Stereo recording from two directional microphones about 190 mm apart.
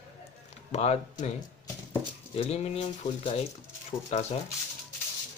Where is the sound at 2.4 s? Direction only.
35° left (ahead or behind).